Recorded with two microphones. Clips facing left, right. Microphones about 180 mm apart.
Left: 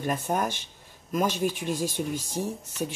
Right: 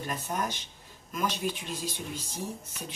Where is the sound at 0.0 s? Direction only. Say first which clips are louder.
Left 6 dB; 50° left (ahead or behind).